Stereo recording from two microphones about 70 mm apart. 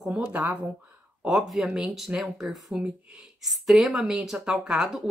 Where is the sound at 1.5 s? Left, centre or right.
Centre.